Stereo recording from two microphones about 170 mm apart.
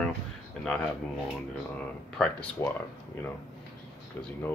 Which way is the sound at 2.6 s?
20° left (ahead or behind).